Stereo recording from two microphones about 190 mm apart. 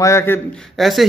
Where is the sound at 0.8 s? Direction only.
Centre (ahead or behind).